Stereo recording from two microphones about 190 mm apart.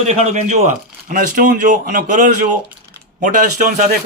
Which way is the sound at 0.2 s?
40° right (ahead or behind).